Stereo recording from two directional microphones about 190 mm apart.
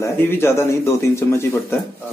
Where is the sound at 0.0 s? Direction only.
15° left (ahead or behind).